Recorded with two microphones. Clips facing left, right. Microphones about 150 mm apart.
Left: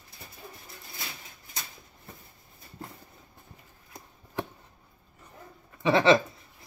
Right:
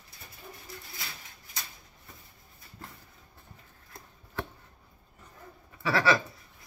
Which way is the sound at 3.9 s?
15° left (ahead or behind).